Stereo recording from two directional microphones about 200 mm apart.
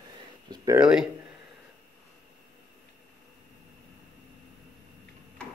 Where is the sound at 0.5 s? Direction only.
15° right (ahead or behind).